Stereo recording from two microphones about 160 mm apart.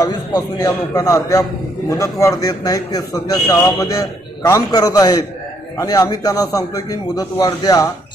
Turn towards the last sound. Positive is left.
turn(degrees=20)  # may be behind; listen again after turning